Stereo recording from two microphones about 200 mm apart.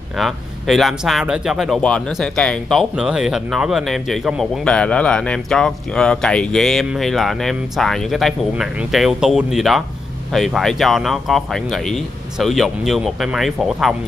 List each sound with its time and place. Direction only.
0.1 s speech: centre (ahead or behind)